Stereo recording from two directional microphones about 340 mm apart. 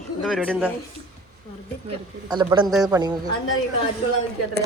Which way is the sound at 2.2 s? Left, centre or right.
Centre.